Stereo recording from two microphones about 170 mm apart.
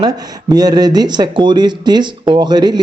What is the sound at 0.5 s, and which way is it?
Speech, 25° right (ahead or behind).